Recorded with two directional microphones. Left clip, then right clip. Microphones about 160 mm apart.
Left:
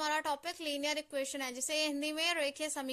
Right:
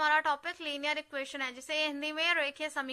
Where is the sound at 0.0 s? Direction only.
40° left (ahead or behind).